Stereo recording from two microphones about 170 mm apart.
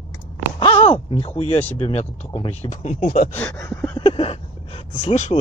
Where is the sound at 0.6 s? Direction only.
30° left (ahead or behind).